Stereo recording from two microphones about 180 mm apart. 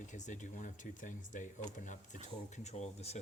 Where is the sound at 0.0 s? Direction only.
40° left (ahead or behind).